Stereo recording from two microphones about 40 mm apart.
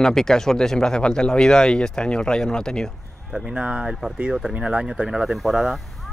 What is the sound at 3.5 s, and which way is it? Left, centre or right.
Speech, right.